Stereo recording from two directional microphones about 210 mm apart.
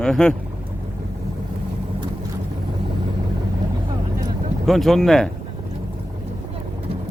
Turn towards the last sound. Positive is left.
turn(degrees=0)  # may be behind; listen again after turning